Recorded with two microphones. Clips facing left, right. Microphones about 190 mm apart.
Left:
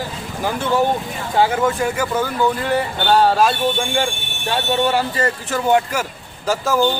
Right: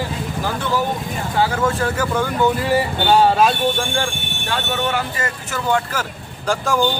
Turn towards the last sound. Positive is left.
turn(degrees=5)  # may be behind; listen again after turning